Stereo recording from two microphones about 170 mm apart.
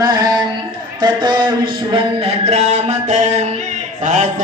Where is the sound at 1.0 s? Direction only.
25° right (ahead or behind); by 4.3 s 45° right (ahead or behind).